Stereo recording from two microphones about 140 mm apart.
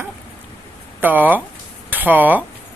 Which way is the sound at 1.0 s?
10° right (ahead or behind).